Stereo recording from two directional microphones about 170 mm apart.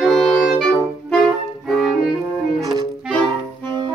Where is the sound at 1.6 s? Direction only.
Centre (ahead or behind).